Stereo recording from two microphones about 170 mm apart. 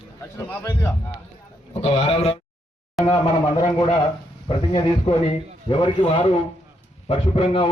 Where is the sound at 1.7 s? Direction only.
35° left (ahead or behind).